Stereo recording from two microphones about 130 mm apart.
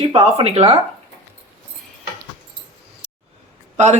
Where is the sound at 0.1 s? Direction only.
50° right (ahead or behind).